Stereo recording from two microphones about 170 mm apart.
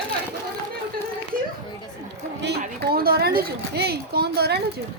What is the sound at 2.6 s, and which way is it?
A woman's voice, 65° right (ahead or behind).